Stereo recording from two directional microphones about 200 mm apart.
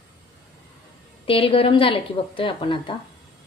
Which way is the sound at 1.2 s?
25° left (ahead or behind).